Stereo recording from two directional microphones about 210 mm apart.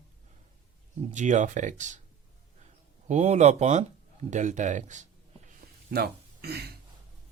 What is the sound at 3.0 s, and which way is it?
Speech, 35° right (ahead or behind).